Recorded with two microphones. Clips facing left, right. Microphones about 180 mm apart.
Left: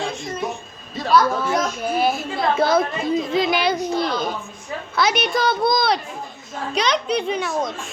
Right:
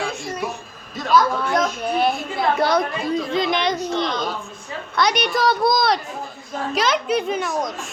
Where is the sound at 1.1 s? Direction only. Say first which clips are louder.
Even; centre (ahead or behind).